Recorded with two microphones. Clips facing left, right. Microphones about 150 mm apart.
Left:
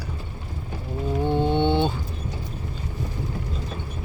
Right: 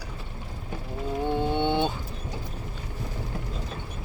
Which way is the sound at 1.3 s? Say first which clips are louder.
Left 4 dB; 5° right (ahead or behind).